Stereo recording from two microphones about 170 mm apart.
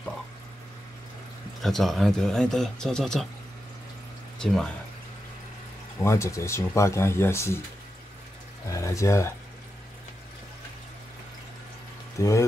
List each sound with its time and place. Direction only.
1.6 s speech: centre (ahead or behind)
4.4 s speech: centre (ahead or behind)
5.9 s speech: 15° left (ahead or behind)
8.6 s speech: 20° left (ahead or behind)
12.2 s speech: 15° left (ahead or behind)